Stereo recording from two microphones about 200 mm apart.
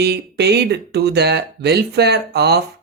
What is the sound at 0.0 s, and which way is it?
Speech, 55° right (ahead or behind).